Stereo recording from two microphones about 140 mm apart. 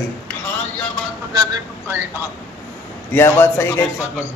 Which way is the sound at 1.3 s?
30° right (ahead or behind).